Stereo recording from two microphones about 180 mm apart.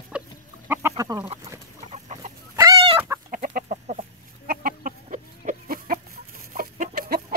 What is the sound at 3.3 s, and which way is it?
Chicken, 50° right (ahead or behind).